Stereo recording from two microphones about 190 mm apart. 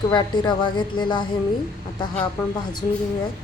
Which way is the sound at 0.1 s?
25° left (ahead or behind).